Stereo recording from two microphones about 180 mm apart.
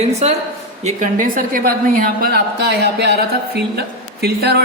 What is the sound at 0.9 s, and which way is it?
A woman's voice, 45° right (ahead or behind).